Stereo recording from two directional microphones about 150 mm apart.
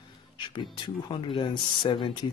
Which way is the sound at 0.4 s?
30° left (ahead or behind).